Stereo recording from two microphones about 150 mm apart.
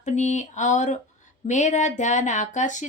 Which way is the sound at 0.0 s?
50° left (ahead or behind).